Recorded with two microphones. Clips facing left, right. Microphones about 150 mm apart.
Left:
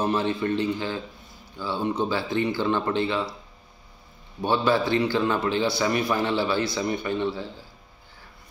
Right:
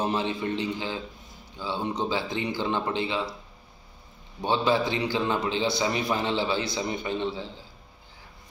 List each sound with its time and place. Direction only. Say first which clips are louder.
0.0 s speech: left 3 dB; 15° right (ahead or behind)
4.4 s a man's voice: left 2 dB; 20° right (ahead or behind)